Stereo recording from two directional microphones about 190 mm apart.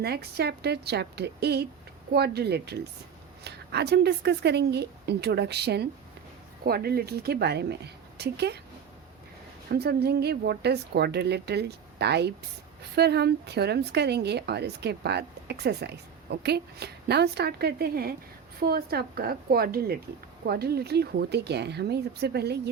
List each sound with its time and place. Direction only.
0.0 s a woman's voice: 55° right (ahead or behind)
9.7 s a woman's voice: 55° right (ahead or behind)